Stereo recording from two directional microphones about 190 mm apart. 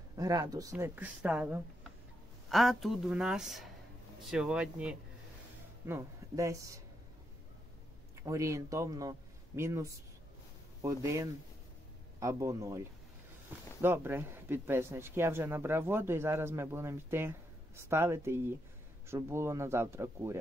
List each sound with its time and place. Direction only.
0.2 s speech: 20° right (ahead or behind)
8.2 s speech: 15° right (ahead or behind)